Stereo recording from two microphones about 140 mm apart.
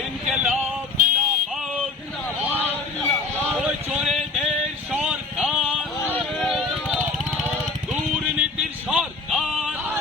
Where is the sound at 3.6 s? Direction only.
10° right (ahead or behind).